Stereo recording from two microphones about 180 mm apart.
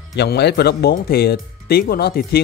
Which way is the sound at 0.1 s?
70° left (ahead or behind).